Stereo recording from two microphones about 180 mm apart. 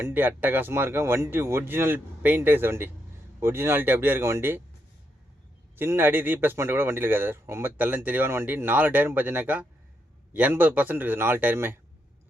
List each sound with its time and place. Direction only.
0.0 s speech: 10° right (ahead or behind)
5.7 s speech: 10° right (ahead or behind)